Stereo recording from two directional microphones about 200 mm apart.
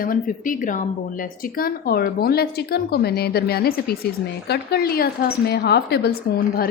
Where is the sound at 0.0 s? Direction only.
45° left (ahead or behind).